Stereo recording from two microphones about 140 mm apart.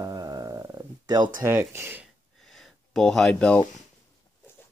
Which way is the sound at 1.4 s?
20° right (ahead or behind).